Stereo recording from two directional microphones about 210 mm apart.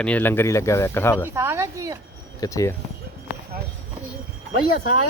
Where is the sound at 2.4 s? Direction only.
15° left (ahead or behind).